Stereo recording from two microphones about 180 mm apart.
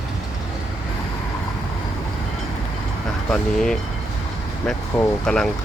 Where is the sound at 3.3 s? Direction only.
5° left (ahead or behind).